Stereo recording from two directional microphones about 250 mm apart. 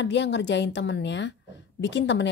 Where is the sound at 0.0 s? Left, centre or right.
Left.